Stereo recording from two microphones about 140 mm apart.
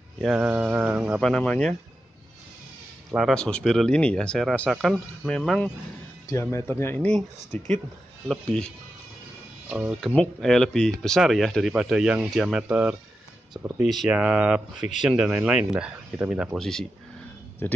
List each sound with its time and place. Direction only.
0.2 s speech: 5° right (ahead or behind)
1.2 s speech: 5° left (ahead or behind)
3.1 s speech: centre (ahead or behind)
6.2 s speech: 20° left (ahead or behind)
7.1 s speech: 5° left (ahead or behind)
9.7 s speech: 5° right (ahead or behind)
14.8 s speech: 60° left (ahead or behind)
15.0 s speech: 10° right (ahead or behind)
17.6 s speech: 15° left (ahead or behind)